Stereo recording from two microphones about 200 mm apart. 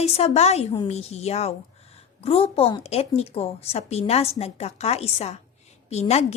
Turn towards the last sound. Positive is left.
turn(degrees=35)  # may be behind; listen again after turning